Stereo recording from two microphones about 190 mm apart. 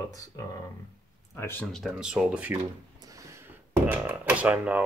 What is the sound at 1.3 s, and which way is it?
Speech, 10° left (ahead or behind).